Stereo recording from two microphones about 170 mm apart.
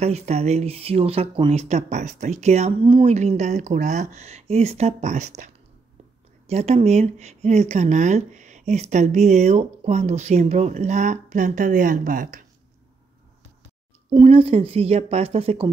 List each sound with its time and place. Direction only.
0.0 s speech: 40° right (ahead or behind)
14.1 s speech: 30° right (ahead or behind)